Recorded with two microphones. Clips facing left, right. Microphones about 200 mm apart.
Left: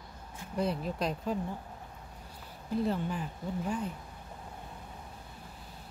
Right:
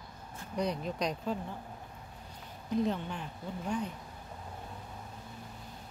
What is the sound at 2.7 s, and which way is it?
Speech, 5° left (ahead or behind).